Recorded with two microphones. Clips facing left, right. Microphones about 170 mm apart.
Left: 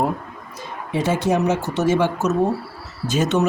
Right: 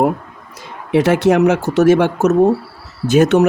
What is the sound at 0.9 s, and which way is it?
Speech, 80° right.